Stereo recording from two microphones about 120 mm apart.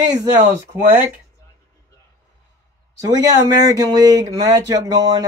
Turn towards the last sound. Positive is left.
turn(degrees=-30)  # may be behind; listen again after turning